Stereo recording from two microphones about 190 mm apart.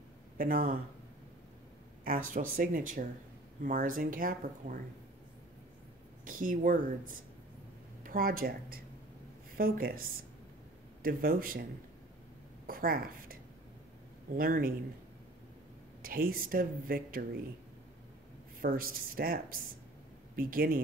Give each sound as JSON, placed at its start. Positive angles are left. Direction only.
{"t": 0.4, "sound": "speech", "side_deg": -50}
{"t": 2.0, "sound": "speech", "side_deg": -45}
{"t": 6.2, "sound": "speech", "side_deg": -45}
{"t": 8.0, "sound": "speech", "side_deg": -45}
{"t": 12.6, "sound": "a woman's voice", "side_deg": -50}
{"t": 16.0, "sound": "speech", "side_deg": -50}
{"t": 18.6, "sound": "speech", "side_deg": -50}